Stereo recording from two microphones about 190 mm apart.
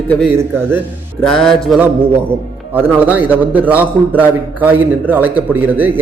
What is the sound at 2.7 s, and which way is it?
A man's voice, 10° right (ahead or behind).